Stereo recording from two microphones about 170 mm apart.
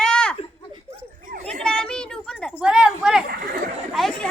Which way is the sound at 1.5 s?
5° left (ahead or behind).